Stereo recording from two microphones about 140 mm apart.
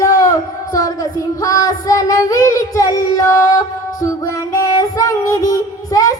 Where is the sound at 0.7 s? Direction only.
25° left (ahead or behind).